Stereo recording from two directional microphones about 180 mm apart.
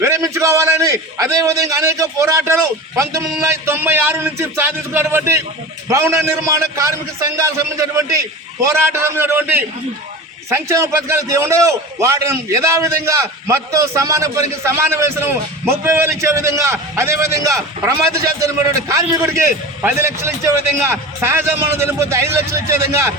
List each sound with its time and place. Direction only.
0.0 s a man's voice: 15° right (ahead or behind)